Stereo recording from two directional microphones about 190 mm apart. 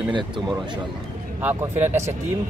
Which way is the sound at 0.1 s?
25° right (ahead or behind).